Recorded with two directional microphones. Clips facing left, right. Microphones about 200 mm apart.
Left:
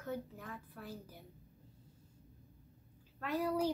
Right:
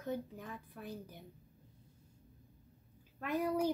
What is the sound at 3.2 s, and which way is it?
Speech, 15° right (ahead or behind).